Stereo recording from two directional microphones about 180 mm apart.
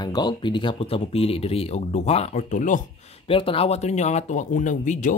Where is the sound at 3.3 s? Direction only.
30° left (ahead or behind).